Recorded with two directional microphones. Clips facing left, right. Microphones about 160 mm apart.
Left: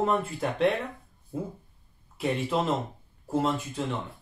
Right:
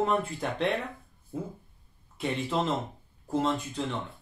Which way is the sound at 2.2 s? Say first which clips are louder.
Left 2 dB; centre (ahead or behind).